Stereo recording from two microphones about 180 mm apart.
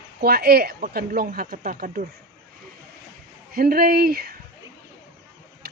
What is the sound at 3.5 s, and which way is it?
Speech, 55° right (ahead or behind).